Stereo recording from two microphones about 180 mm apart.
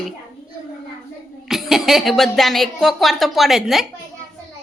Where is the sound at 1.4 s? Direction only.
Centre (ahead or behind).